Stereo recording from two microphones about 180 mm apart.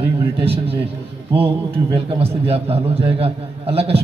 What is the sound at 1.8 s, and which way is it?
A man's voice, 30° right (ahead or behind).